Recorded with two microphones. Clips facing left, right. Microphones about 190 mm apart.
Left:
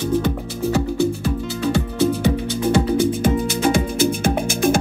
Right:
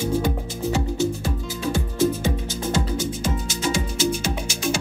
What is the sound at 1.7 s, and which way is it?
Music, 65° left (ahead or behind).